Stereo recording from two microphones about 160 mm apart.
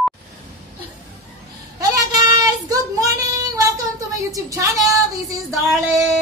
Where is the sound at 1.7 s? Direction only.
25° right (ahead or behind).